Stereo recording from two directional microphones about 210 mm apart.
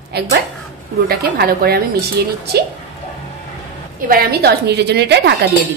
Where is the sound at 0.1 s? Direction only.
50° right (ahead or behind).